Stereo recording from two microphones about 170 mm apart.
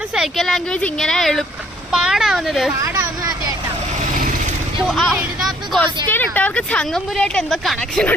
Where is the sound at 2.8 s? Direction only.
20° right (ahead or behind).